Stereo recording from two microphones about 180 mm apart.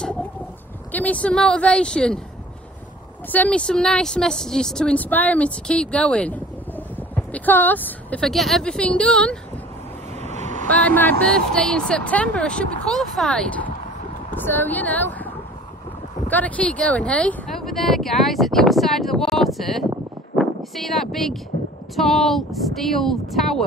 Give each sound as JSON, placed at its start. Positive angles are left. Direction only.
{"t": 0.9, "sound": "speech", "side_deg": 10}
{"t": 3.3, "sound": "speech", "side_deg": 10}
{"t": 10.2, "sound": "vehicle", "side_deg": -40}
{"t": 10.7, "sound": "speech", "side_deg": 10}
{"t": 20.3, "sound": "a sound", "side_deg": 0}
{"t": 21.9, "sound": "speech", "side_deg": 0}